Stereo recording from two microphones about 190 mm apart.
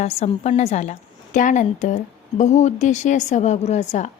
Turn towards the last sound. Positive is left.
turn(degrees=35)  # may be behind; listen again after turning